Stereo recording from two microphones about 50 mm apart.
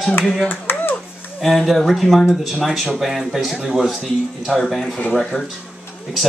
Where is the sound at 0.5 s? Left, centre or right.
Left.